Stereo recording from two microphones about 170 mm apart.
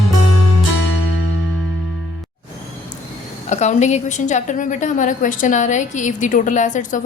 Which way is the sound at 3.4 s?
45° left (ahead or behind).